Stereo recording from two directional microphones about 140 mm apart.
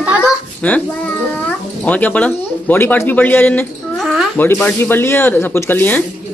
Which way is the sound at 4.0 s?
Centre (ahead or behind).